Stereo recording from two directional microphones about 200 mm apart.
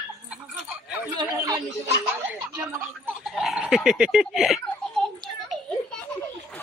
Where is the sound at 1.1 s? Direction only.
20° right (ahead or behind).